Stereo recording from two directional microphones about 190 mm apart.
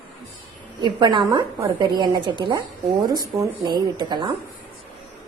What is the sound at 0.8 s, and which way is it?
A woman's voice, 25° right (ahead or behind).